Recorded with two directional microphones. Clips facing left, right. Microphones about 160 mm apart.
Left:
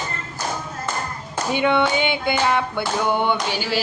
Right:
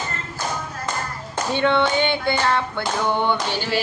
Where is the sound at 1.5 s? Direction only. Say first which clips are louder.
Even; 10° left (ahead or behind).